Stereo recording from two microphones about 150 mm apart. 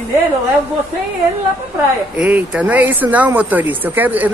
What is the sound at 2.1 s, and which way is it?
Speech, 10° right (ahead or behind).